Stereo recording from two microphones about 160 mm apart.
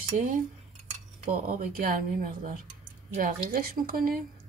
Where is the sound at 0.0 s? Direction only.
55° right (ahead or behind).